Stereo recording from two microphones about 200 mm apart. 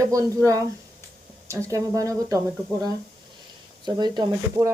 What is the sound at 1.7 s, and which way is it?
Speech, 15° right (ahead or behind).